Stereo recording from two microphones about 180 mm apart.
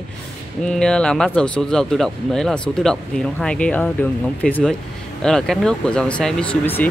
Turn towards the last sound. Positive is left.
turn(degrees=10)  # may be behind; listen again after turning